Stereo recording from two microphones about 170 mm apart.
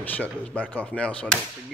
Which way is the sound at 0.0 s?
10° left (ahead or behind).